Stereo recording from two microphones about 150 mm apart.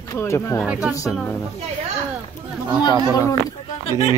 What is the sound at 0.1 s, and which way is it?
Speech, 20° left (ahead or behind).